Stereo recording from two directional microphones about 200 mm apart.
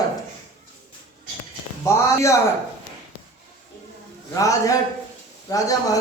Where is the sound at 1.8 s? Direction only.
15° left (ahead or behind).